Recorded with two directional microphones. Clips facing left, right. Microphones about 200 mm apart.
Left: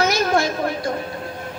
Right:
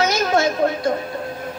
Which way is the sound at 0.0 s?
20° right (ahead or behind).